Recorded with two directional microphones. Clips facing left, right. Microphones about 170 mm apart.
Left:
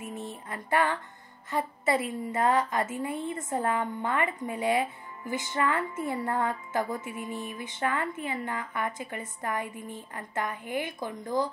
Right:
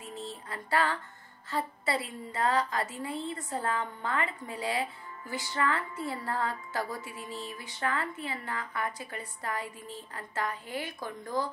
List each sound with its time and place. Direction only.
0.0 s music: 20° left (ahead or behind)
1.5 s a woman's voice: 20° left (ahead or behind)